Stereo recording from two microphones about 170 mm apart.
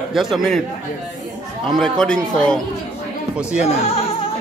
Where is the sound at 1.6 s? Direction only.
Centre (ahead or behind).